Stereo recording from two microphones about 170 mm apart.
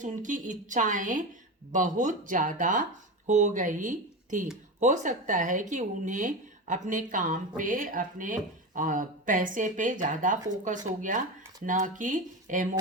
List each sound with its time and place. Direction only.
0.0 s speech: 50° right (ahead or behind)